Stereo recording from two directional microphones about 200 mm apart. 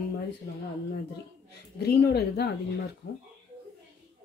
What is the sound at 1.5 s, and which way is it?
A woman's voice, 55° left (ahead or behind).